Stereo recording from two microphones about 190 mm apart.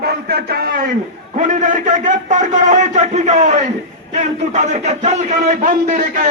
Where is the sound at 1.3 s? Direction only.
40° right (ahead or behind).